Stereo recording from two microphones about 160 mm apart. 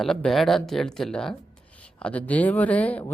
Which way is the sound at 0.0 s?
5° left (ahead or behind).